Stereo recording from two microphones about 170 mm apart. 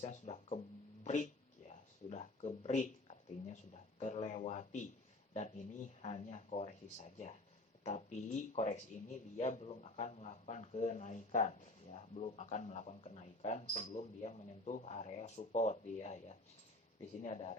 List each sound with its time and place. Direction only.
0.0 s speech: 40° left (ahead or behind)
1.7 s a sound: 40° left (ahead or behind)
4.0 s speech: 40° left (ahead or behind)
6.0 s speech: 40° left (ahead or behind)